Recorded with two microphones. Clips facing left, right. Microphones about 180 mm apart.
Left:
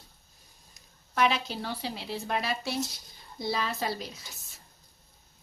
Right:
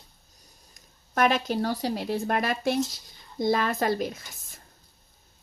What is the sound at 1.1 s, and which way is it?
A woman's voice, 50° right (ahead or behind).